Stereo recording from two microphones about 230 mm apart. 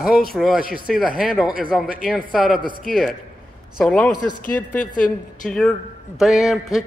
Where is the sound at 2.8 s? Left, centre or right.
Centre.